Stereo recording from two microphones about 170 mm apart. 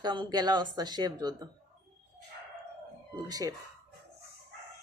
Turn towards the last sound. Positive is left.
turn(degrees=-20)  # may be behind; listen again after turning